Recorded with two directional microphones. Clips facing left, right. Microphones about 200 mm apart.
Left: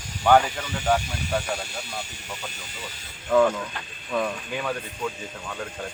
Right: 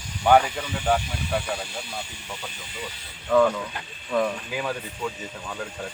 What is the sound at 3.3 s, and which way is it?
Speech, 5° left (ahead or behind).